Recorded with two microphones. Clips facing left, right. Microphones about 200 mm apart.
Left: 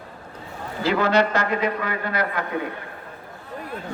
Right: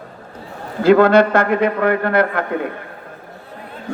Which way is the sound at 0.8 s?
55° right (ahead or behind).